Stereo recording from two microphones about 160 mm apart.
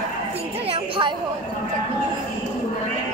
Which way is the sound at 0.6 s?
35° right (ahead or behind).